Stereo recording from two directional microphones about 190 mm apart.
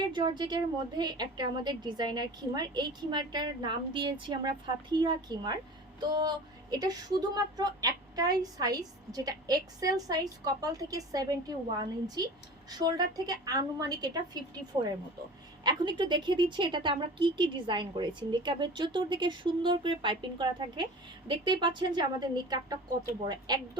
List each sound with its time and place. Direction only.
0.1 s a woman's voice: 25° right (ahead or behind)
15.6 s a woman's voice: 25° right (ahead or behind)